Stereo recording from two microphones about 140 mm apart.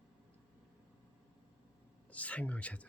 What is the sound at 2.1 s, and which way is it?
Speech, 10° left (ahead or behind).